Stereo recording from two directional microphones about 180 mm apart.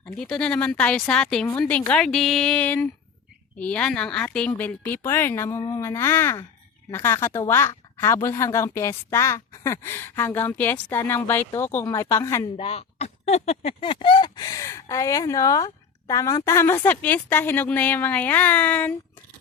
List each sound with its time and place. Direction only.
0.0 s speech: 5° left (ahead or behind)
12.5 s speech: 35° left (ahead or behind); by 18.9 s 10° left (ahead or behind)